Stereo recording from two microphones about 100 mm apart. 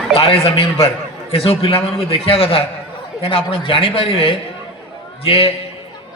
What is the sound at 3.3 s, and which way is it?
A man's voice, 60° left (ahead or behind).